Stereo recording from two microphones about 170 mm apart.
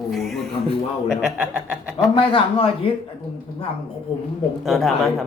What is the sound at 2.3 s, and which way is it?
Speech, 30° left (ahead or behind).